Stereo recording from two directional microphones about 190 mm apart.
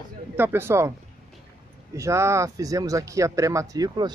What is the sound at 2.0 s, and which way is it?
Speech, 15° right (ahead or behind).